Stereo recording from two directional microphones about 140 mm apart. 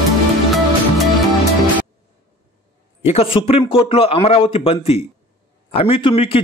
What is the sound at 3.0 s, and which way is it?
A man's voice, 45° left (ahead or behind).